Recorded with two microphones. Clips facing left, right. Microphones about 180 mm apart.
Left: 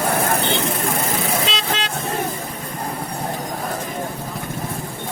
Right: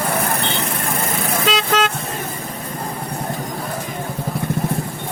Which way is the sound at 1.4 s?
50° right (ahead or behind).